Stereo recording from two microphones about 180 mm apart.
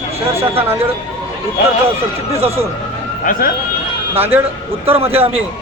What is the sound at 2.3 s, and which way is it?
Speech, 35° right (ahead or behind).